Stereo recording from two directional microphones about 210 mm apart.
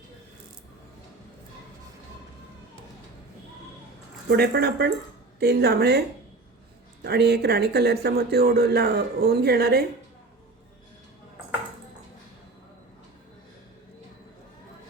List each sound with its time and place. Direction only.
4.3 s speech: 50° right (ahead or behind)
7.0 s speech: 50° right (ahead or behind)